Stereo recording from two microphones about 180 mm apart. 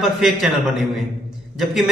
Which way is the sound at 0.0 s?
Centre (ahead or behind).